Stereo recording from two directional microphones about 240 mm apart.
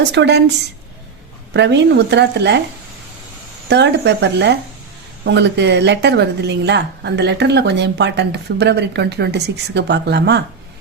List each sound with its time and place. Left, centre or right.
0.1 s speech: right
1.5 s speech: right
3.7 s speech: right